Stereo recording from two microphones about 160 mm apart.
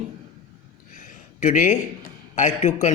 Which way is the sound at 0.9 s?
55° left (ahead or behind).